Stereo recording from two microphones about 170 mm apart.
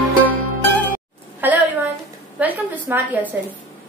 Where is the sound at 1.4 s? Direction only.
10° right (ahead or behind).